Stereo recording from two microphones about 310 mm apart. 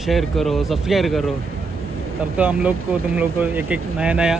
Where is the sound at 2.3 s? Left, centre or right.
Centre.